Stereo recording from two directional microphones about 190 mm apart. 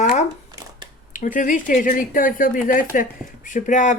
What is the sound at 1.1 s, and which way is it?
Speech, 40° left (ahead or behind).